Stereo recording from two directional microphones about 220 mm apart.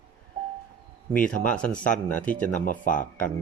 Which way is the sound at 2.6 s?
35° left (ahead or behind).